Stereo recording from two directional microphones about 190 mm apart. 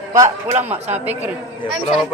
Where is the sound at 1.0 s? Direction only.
10° right (ahead or behind).